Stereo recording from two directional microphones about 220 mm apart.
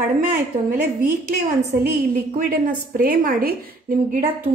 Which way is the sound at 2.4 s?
40° right (ahead or behind).